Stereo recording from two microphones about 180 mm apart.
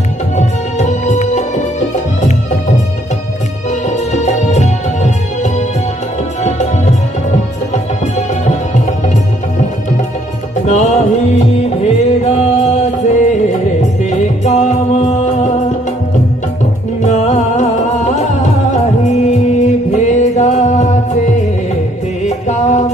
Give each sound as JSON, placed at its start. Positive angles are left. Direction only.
{"t": 0.7, "sound": "music", "side_deg": 40}
{"t": 3.9, "sound": "music", "side_deg": 40}
{"t": 10.7, "sound": "music", "side_deg": 40}
{"t": 17.0, "sound": "music", "side_deg": 40}